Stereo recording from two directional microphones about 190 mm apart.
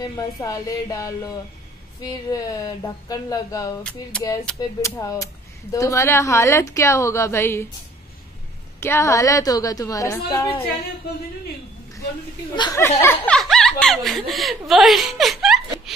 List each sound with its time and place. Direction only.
0.2 s speech: 20° left (ahead or behind)
4.1 s speech: 5° left (ahead or behind)
4.6 s speech: 15° left (ahead or behind)
8.7 s speech: 15° left (ahead or behind)
12.5 s speech: 20° left (ahead or behind); by 15.6 s centre (ahead or behind)